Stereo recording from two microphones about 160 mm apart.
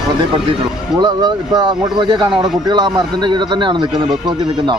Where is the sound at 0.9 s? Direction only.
25° right (ahead or behind).